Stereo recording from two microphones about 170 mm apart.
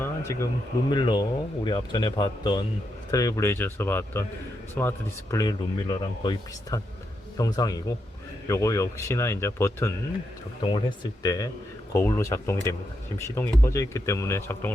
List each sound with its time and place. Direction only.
0.0 s a sound: 15° left (ahead or behind)
0.9 s speech: 25° left (ahead or behind)
10.6 s speech: 30° left (ahead or behind)